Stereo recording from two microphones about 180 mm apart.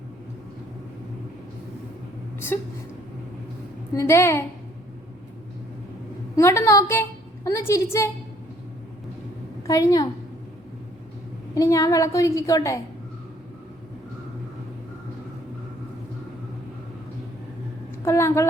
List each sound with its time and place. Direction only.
3.9 s a woman's voice: 15° left (ahead or behind)
6.3 s a woman's voice: 15° left (ahead or behind)
9.6 s a woman's voice: 15° left (ahead or behind)
11.5 s a woman's voice: 20° left (ahead or behind)
18.0 s a woman's voice: 15° left (ahead or behind)